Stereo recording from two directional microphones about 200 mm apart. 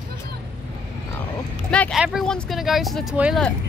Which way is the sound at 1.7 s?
5° left (ahead or behind).